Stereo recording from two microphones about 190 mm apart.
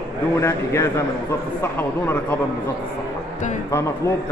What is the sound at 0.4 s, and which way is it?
A man's voice, 15° left (ahead or behind).